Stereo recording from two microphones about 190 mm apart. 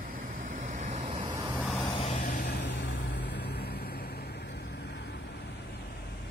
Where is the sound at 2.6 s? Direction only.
65° left (ahead or behind).